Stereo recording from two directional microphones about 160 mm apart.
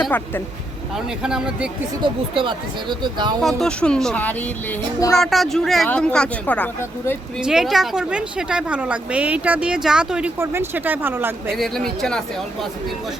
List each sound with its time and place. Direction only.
0.0 s speech: 10° left (ahead or behind)
0.9 s speech: 5° right (ahead or behind)
2.0 s speech: 30° right (ahead or behind)
3.4 s speech: 5° left (ahead or behind)
7.4 s a woman's voice: centre (ahead or behind)
11.5 s speech: centre (ahead or behind)